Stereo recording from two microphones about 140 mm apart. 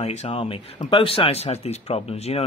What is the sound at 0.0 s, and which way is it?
Speech, 50° left (ahead or behind).